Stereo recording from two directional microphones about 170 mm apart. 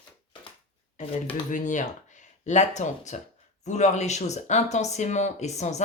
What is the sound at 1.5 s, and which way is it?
Speech, 50° left (ahead or behind).